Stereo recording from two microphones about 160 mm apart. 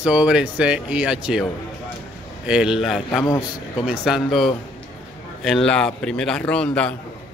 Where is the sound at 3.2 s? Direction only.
25° left (ahead or behind).